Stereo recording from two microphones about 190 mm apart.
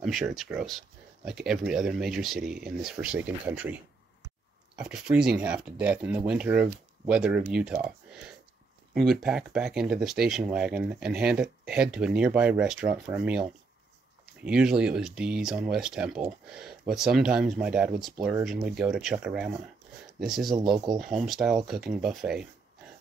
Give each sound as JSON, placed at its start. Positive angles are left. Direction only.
{"t": 0.0, "sound": "speech", "side_deg": 0}
{"t": 8.9, "sound": "speech", "side_deg": 0}